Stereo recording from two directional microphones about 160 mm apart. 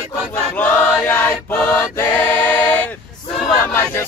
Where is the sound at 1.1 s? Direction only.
10° left (ahead or behind).